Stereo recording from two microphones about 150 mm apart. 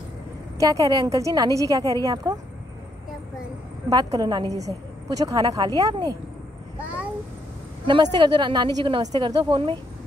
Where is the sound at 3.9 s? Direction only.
25° right (ahead or behind).